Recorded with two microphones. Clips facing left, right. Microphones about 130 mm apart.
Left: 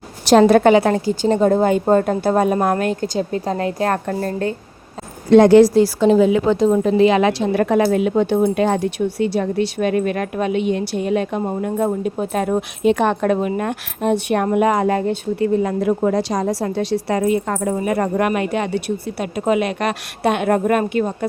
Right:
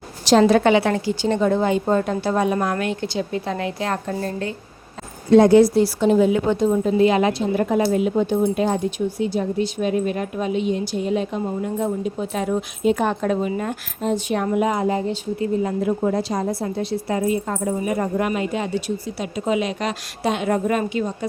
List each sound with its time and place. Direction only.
0.3 s a woman's voice: 55° left (ahead or behind)
5.3 s a woman's voice: 85° left; by 21.2 s 55° left (ahead or behind)